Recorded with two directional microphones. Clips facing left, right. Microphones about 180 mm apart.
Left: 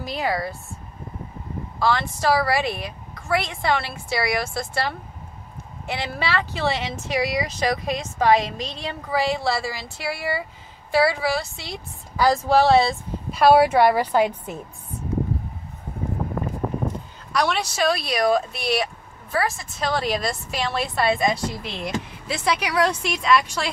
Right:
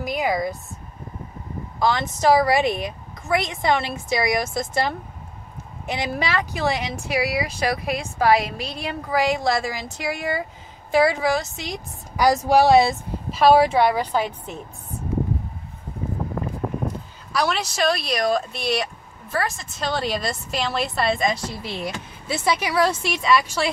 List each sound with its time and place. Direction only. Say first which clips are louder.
0.0 s speech: right 2 dB; 15° right (ahead or behind)
1.8 s a woman's voice: right 1 dB; 20° right (ahead or behind)
13.3 s a woman's voice: even; centre (ahead or behind)
17.3 s speech: even; centre (ahead or behind)